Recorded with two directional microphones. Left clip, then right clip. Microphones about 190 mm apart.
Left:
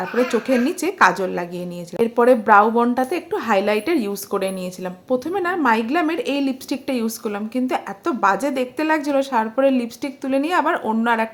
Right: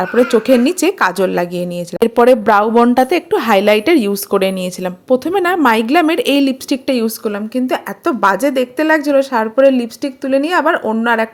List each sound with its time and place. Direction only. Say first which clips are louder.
0.0 s a woman's voice: right 8 dB; 35° right (ahead or behind)